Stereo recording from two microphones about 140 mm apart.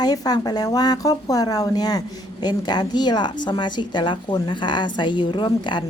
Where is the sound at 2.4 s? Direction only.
30° left (ahead or behind).